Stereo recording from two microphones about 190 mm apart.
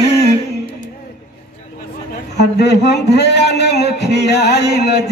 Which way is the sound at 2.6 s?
60° left (ahead or behind).